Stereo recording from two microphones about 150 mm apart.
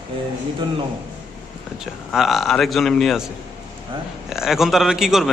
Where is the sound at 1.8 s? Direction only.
Centre (ahead or behind).